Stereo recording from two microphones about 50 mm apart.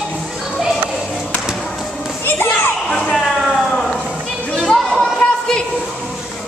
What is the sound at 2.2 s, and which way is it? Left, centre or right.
Children playing, left.